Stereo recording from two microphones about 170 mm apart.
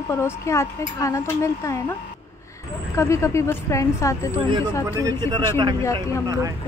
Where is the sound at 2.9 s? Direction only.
15° left (ahead or behind).